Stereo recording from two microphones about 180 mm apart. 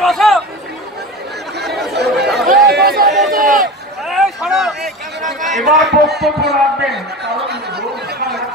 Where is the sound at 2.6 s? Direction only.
65° right (ahead or behind).